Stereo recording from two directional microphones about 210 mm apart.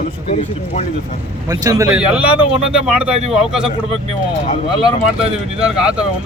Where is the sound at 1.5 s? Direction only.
15° right (ahead or behind).